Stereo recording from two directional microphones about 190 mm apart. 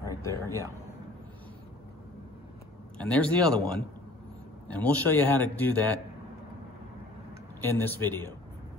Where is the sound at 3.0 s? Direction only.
5° left (ahead or behind).